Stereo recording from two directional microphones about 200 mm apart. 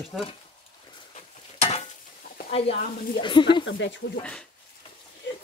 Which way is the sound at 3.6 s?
65° left (ahead or behind).